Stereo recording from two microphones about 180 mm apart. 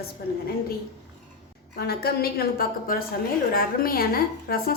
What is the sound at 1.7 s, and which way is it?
A woman's voice, 60° left (ahead or behind).